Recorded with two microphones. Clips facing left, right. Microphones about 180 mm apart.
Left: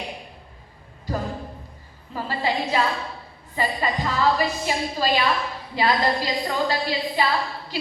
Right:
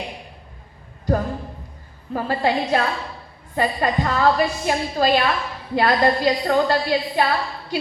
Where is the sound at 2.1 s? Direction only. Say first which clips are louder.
Right 5 dB; 55° right (ahead or behind).